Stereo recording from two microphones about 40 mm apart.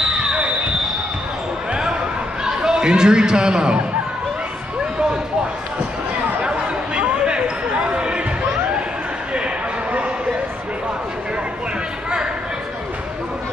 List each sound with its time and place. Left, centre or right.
0.0 s basketball bounce: centre
1.7 s basketball bounce: right
2.4 s a man's voice: centre
6.4 s chatter: right